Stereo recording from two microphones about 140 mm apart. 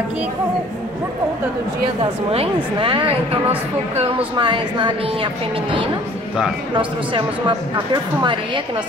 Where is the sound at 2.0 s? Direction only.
40° right (ahead or behind).